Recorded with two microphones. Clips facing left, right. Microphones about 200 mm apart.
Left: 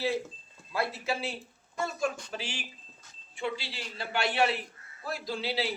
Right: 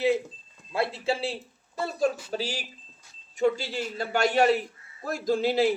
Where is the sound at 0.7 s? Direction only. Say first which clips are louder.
Right 4 dB; 25° right (ahead or behind).